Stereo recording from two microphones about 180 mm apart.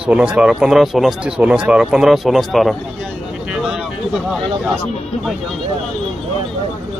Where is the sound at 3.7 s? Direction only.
Centre (ahead or behind).